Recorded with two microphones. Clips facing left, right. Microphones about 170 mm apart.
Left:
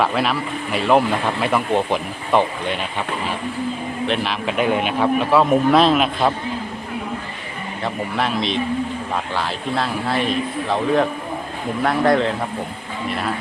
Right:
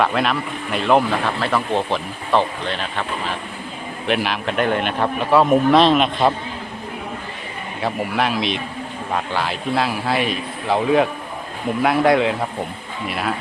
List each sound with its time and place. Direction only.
0.0 s a man's voice: 5° left (ahead or behind)
4.0 s a man's voice: 5° right (ahead or behind)
7.8 s a man's voice: 5° right (ahead or behind)
11.8 s a man's voice: 5° right (ahead or behind)